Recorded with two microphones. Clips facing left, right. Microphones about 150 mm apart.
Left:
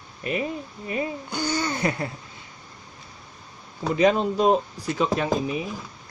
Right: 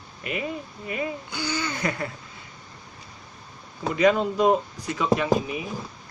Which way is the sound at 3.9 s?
30° left (ahead or behind).